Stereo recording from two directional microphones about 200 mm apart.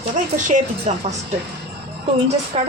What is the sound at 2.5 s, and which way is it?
Speech, 30° right (ahead or behind).